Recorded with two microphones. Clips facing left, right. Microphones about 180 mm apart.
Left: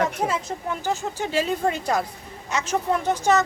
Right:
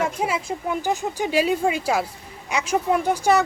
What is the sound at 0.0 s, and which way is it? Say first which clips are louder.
Speech: even; 10° right (ahead or behind).